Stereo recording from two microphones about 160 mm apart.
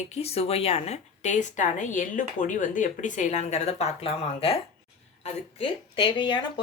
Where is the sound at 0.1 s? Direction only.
40° left (ahead or behind).